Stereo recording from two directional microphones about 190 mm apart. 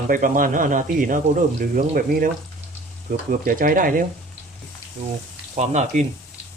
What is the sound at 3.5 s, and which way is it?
Speech, 45° right (ahead or behind).